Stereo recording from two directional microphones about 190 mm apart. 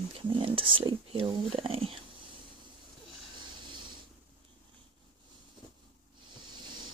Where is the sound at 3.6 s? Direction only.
25° right (ahead or behind).